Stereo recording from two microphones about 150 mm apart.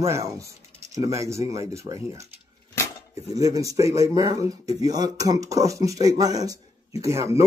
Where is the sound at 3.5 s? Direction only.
20° right (ahead or behind).